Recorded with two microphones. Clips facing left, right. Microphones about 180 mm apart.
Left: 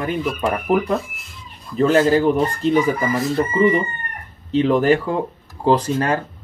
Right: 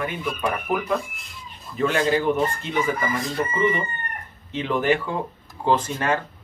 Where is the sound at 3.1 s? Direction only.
5° left (ahead or behind).